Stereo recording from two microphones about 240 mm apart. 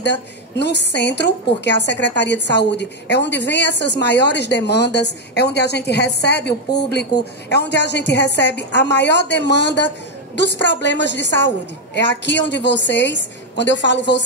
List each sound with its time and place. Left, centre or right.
0.0 s a woman's voice: left